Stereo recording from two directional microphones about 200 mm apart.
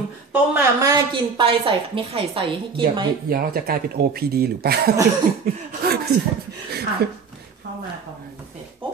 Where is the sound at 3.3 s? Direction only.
50° right (ahead or behind).